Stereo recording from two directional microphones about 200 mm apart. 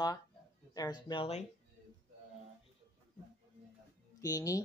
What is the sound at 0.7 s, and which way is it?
Speech, 20° left (ahead or behind).